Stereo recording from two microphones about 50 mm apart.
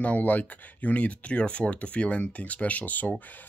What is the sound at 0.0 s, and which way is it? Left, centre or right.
Speech, left.